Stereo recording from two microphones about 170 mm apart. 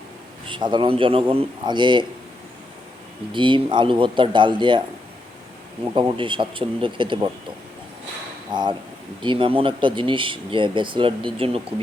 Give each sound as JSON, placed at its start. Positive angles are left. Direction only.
{"t": 0.4, "sound": "speech", "side_deg": -30}
{"t": 3.3, "sound": "speech", "side_deg": -30}
{"t": 5.9, "sound": "speech", "side_deg": -30}
{"t": 8.5, "sound": "speech", "side_deg": -25}